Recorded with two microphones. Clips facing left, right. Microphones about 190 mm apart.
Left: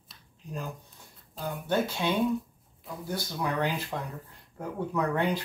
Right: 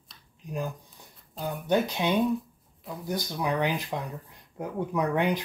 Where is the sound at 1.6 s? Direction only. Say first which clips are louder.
Right 3 dB; 15° right (ahead or behind).